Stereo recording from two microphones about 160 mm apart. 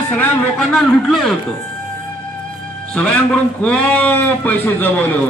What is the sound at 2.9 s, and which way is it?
A man's voice, 5° left (ahead or behind).